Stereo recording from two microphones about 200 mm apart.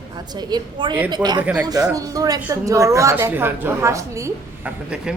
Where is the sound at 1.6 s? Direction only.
20° right (ahead or behind).